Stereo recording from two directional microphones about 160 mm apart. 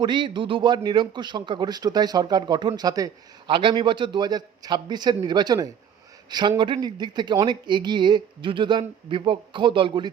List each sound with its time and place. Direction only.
0.0 s a man's voice: 30° right (ahead or behind)